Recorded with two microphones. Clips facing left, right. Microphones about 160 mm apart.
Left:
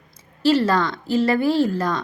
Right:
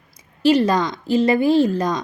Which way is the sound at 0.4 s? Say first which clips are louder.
Right 2 dB; 15° right (ahead or behind).